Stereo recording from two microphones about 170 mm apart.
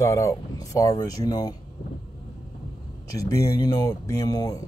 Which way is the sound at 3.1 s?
20° left (ahead or behind).